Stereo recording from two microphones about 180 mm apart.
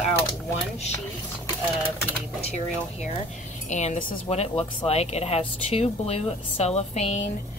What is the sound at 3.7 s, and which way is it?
A woman's voice, 40° left (ahead or behind).